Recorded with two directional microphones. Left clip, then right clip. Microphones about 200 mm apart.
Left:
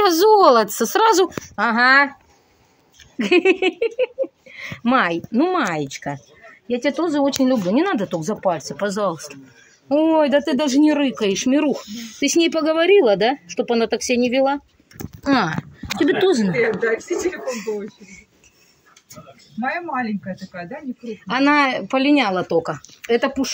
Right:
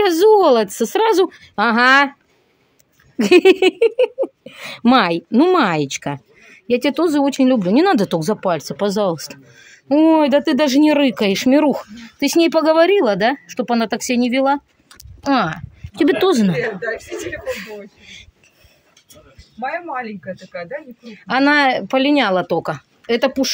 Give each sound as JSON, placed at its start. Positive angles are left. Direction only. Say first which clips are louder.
{"t": 0.0, "sound": "speech", "louder": "right 1 dB", "side_deg": -30}
{"t": 3.2, "sound": "speech", "louder": "right 5 dB", "side_deg": -35}
{"t": 5.7, "sound": "speech", "louder": "right 4 dB", "side_deg": -30}
{"t": 7.8, "sound": "speech", "louder": "right 6 dB", "side_deg": -50}
{"t": 8.2, "sound": "speech", "louder": "right 2 dB", "side_deg": -30}
{"t": 8.6, "sound": "speech", "louder": "right 3 dB", "side_deg": -50}
{"t": 15.2, "sound": "speech", "louder": "right 2 dB", "side_deg": -15}
{"t": 16.0, "sound": "speech", "louder": "right 2 dB", "side_deg": -35}
{"t": 17.6, "sound": "speech", "louder": "left 5 dB", "side_deg": -45}
{"t": 19.9, "sound": "speech", "louder": "left 1 dB", "side_deg": -45}